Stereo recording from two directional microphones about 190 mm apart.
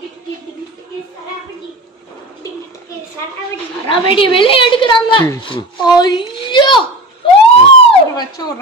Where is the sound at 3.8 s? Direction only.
25° left (ahead or behind).